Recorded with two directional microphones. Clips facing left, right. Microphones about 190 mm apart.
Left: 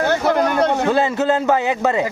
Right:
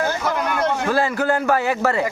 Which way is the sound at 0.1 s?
70° left (ahead or behind).